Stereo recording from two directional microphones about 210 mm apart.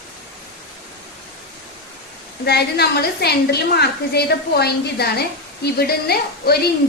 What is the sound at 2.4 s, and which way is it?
A woman's voice, 50° left (ahead or behind).